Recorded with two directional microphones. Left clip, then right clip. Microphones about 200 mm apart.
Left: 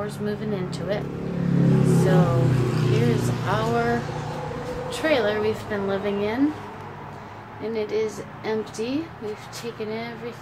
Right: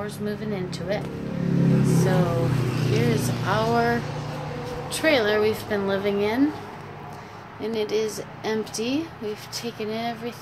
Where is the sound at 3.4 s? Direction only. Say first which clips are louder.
Right 2 dB; 35° right (ahead or behind).